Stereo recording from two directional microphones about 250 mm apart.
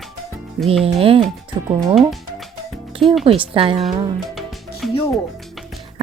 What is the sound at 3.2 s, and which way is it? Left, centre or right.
Speech, right.